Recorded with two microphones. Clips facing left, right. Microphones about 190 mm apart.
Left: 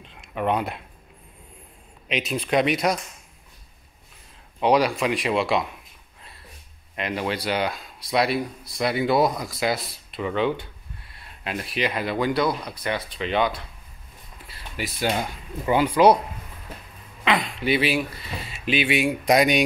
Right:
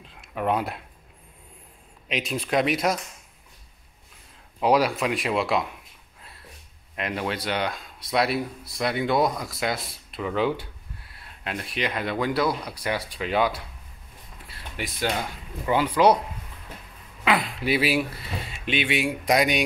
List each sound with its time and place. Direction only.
0.0 s a sound: 5° right (ahead or behind)
2.0 s speech: centre (ahead or behind)
4.6 s speech: 5° right (ahead or behind)
7.0 s speech: centre (ahead or behind)
14.5 s a sound: 5° left (ahead or behind)
15.0 s speech: 15° left (ahead or behind)
17.2 s speech: 5° right (ahead or behind)
19.2 s speech: 25° left (ahead or behind)